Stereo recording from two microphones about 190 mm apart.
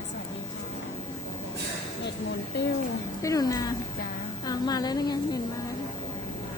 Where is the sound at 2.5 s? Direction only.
60° left (ahead or behind).